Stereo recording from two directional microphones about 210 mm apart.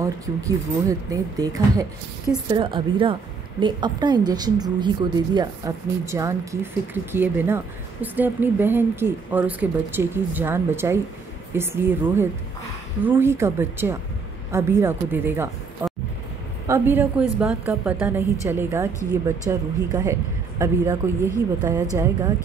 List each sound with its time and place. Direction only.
0.0 s a woman's voice: 15° right (ahead or behind)